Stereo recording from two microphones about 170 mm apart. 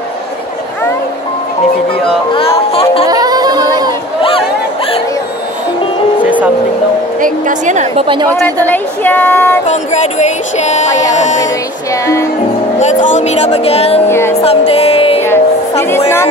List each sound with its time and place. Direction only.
2.3 s music: 35° left (ahead or behind)
3.1 s a sound: 20° right (ahead or behind)
7.2 s a woman's voice: 50° right (ahead or behind); by 8.3 s 30° right (ahead or behind)
8.6 s speech: 10° left (ahead or behind)
9.7 s speech: 45° left (ahead or behind)
10.9 s speech: 20° left (ahead or behind)
12.8 s speech: 45° left (ahead or behind)
14.0 s speech: 15° left (ahead or behind)
14.4 s music: 35° left (ahead or behind)
15.2 s music: 15° left (ahead or behind)